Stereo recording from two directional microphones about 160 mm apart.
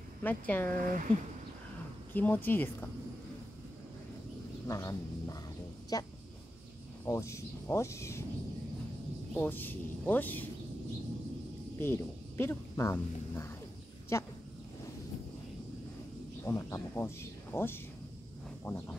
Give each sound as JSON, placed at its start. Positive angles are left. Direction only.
{"t": 0.2, "sound": "speech", "side_deg": 10}
{"t": 4.6, "sound": "speech", "side_deg": 20}
{"t": 9.3, "sound": "speech", "side_deg": 10}
{"t": 11.8, "sound": "speech", "side_deg": 15}
{"t": 16.4, "sound": "speech", "side_deg": 15}
{"t": 18.6, "sound": "a sound", "side_deg": 15}